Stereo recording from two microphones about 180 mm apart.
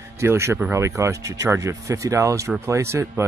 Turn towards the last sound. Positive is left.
turn(degrees=-15)  # may be behind; listen again after turning